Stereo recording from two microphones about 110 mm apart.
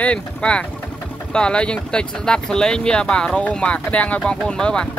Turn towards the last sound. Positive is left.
turn(degrees=5)  # may be behind; listen again after turning